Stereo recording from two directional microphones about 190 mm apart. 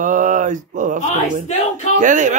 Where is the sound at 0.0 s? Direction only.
45° right (ahead or behind).